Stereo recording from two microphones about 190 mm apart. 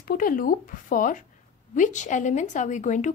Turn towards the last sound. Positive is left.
turn(degrees=40)  # may be behind; listen again after turning